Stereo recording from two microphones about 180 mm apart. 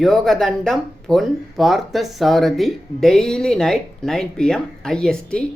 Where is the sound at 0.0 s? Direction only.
Centre (ahead or behind).